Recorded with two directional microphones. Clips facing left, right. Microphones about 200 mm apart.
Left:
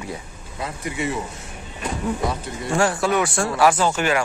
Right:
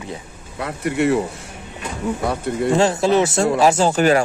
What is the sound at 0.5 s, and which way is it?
Speech, 65° right (ahead or behind).